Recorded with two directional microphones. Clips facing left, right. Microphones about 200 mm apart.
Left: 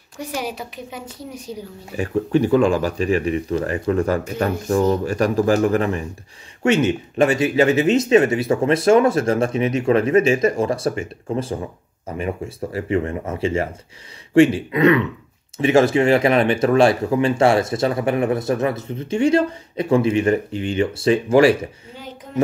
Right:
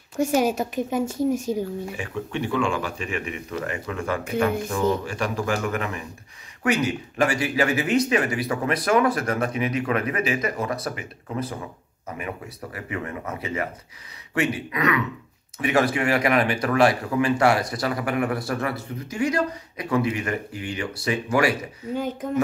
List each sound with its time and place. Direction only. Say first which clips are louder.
0.2 s a woman's voice: right 7 dB; 45° right (ahead or behind)
2.0 s speech: left 10 dB; 40° left (ahead or behind)
21.9 s a woman's voice: right 10 dB; 50° right (ahead or behind)